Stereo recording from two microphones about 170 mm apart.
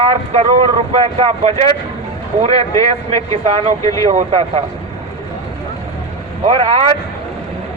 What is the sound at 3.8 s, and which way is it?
Speech, 20° left (ahead or behind).